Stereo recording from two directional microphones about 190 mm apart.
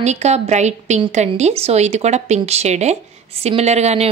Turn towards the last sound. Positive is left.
turn(degrees=-35)  # may be behind; listen again after turning